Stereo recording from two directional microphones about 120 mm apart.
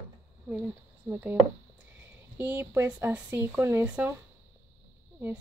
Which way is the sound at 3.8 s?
10° right (ahead or behind).